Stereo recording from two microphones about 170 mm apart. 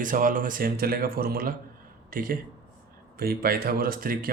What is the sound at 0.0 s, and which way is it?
Speech, 50° right (ahead or behind).